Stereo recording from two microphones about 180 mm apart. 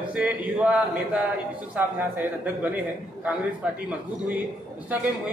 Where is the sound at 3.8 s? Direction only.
10° right (ahead or behind).